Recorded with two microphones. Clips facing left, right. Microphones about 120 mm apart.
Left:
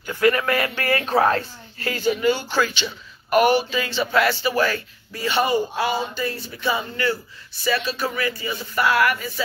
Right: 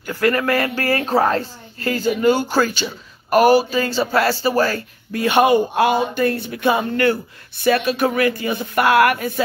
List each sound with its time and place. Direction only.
0.0 s speech: 45° right (ahead or behind)
5.1 s speech: 55° right (ahead or behind)